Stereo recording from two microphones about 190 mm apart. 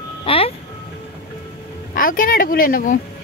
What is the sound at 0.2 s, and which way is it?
Ice cream truck, 30° left (ahead or behind).